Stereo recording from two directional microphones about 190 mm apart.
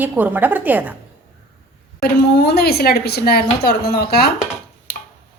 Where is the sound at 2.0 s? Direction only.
55° left (ahead or behind).